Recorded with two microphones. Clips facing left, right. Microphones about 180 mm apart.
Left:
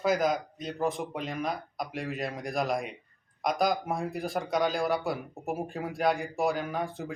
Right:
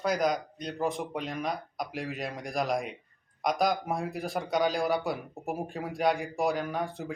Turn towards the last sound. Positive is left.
turn(degrees=0)  # may be behind; listen again after turning